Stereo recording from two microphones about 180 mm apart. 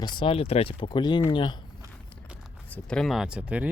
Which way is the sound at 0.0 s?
25° left (ahead or behind).